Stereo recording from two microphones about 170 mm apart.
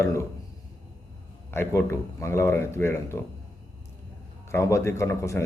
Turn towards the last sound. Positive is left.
turn(degrees=15)  # may be behind; listen again after turning